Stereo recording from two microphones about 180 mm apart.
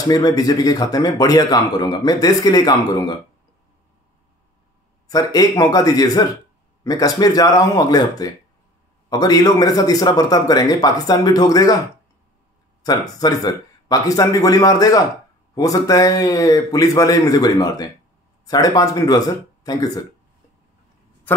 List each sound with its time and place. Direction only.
0.1 s a man's voice: 20° left (ahead or behind)
5.0 s a man's voice: 20° left (ahead or behind)
12.8 s a man's voice: 20° left (ahead or behind)